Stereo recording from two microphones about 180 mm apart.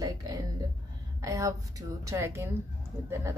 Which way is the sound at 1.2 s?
20° right (ahead or behind).